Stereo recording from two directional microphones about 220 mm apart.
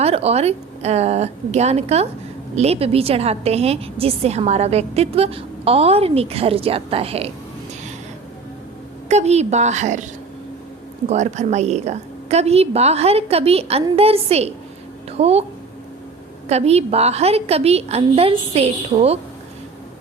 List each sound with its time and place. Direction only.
0.0 s a woman's voice: 25° right (ahead or behind)
9.0 s a woman's voice: 30° right (ahead or behind)
11.1 s a woman's voice: 30° right (ahead or behind)
16.5 s a woman's voice: 30° right (ahead or behind)